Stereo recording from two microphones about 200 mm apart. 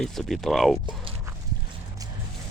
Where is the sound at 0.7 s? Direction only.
25° right (ahead or behind).